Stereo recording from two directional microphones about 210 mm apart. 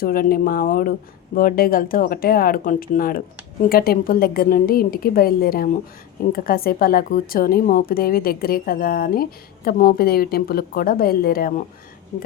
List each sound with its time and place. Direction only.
0.0 s speech: 45° left (ahead or behind)